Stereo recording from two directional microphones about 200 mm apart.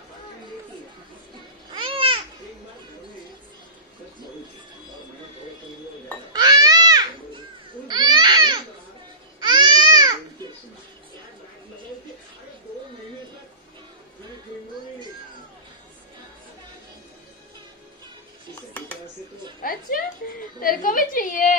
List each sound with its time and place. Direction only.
1.7 s babbling: 25° right (ahead or behind)
6.3 s baby cry: 20° right (ahead or behind)
9.4 s babbling: 20° right (ahead or behind)
19.6 s a sound: 45° left (ahead or behind)